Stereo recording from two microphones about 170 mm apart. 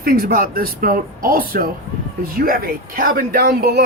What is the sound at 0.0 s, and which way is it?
Speech, 55° right (ahead or behind).